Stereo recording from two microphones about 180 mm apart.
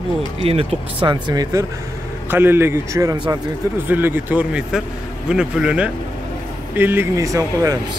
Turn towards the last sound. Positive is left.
turn(degrees=-20)  # may be behind; listen again after turning